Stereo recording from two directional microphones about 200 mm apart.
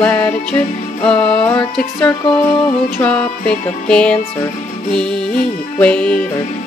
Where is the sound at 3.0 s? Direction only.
5° left (ahead or behind).